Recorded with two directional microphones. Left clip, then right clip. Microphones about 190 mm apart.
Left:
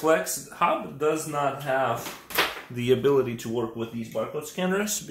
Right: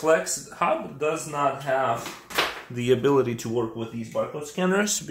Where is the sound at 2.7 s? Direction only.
10° right (ahead or behind).